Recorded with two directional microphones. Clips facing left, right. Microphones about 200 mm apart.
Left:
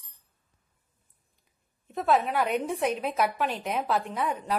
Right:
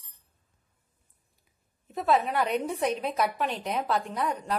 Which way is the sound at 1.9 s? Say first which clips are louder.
Even; centre (ahead or behind).